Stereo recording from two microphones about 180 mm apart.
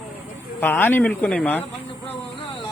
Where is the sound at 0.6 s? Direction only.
10° left (ahead or behind).